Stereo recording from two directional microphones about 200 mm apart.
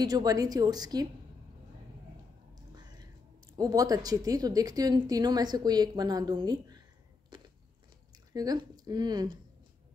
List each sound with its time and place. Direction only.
0.0 s speech: 20° right (ahead or behind)
2.7 s whispering: 20° right (ahead or behind)
3.5 s speech: 20° right (ahead or behind)
8.1 s speech: 20° right (ahead or behind)